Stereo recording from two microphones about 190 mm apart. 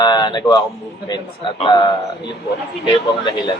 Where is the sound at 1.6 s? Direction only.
25° left (ahead or behind).